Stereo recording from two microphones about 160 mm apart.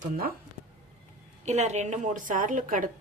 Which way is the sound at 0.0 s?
65° right (ahead or behind).